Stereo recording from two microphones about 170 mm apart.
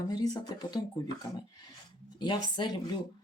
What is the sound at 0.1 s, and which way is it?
Speech, 25° left (ahead or behind).